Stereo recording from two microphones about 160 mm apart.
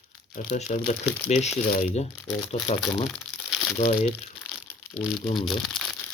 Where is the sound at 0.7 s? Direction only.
45° left (ahead or behind).